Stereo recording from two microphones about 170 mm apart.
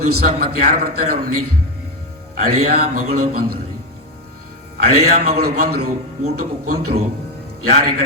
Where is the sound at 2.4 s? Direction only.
50° right (ahead or behind).